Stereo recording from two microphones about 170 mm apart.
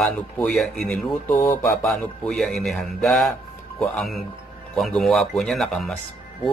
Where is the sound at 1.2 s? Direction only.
15° left (ahead or behind).